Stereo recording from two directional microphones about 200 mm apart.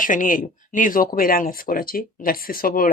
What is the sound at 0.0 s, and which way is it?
A woman's voice, 40° left (ahead or behind).